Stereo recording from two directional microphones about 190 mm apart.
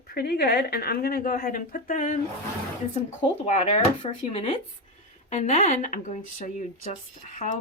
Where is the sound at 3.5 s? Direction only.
35° left (ahead or behind).